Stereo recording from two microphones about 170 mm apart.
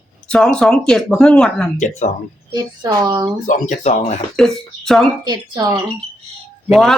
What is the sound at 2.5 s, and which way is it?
Speech, 25° right (ahead or behind).